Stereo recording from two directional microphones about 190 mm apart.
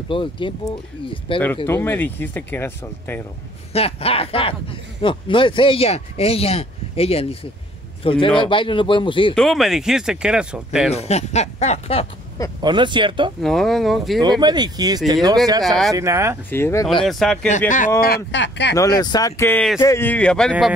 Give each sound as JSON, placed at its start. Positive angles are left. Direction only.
{"t": 0.1, "sound": "speech", "side_deg": 25}
{"t": 1.7, "sound": "speech", "side_deg": 10}
{"t": 3.7, "sound": "a man's voice", "side_deg": 30}
{"t": 9.3, "sound": "speech", "side_deg": 0}
{"t": 10.9, "sound": "speech", "side_deg": 35}
{"t": 12.6, "sound": "speech", "side_deg": -25}
{"t": 13.4, "sound": "speech", "side_deg": 0}
{"t": 14.2, "sound": "speech", "side_deg": -25}
{"t": 15.6, "sound": "speech", "side_deg": 0}
{"t": 15.9, "sound": "speech", "side_deg": -15}
{"t": 16.4, "sound": "speech", "side_deg": 10}
{"t": 17.6, "sound": "speech", "side_deg": 45}
{"t": 18.0, "sound": "speech", "side_deg": 60}
{"t": 18.8, "sound": "speech", "side_deg": 20}